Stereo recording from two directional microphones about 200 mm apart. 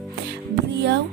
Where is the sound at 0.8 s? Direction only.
60° right (ahead or behind).